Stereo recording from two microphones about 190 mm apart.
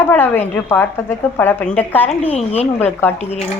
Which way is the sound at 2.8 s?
10° left (ahead or behind).